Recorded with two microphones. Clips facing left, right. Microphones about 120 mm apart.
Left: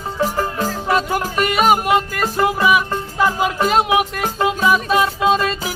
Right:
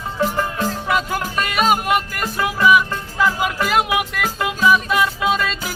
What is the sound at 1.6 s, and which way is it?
Music, 15° left (ahead or behind).